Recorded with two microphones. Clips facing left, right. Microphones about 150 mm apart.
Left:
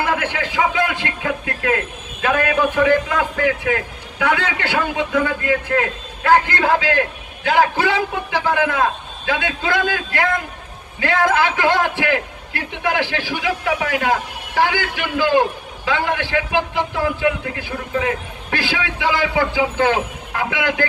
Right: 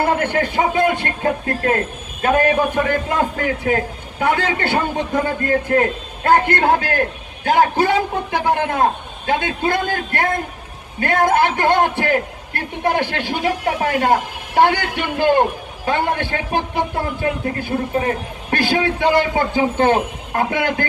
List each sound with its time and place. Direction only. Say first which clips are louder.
0.0 s a man's voice: right 4 dB; 50° right (ahead or behind)
6.3 s a man's voice: right 1 dB; 55° right (ahead or behind)